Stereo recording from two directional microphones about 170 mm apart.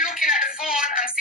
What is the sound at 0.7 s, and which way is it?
Music, 50° left (ahead or behind).